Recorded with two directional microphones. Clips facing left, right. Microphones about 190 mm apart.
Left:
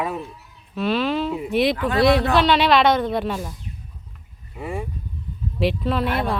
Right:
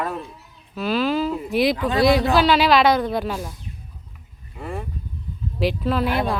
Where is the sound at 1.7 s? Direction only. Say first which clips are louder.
Even; 20° right (ahead or behind).